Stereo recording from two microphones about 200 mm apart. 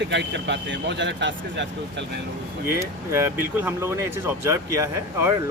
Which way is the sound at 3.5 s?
10° right (ahead or behind).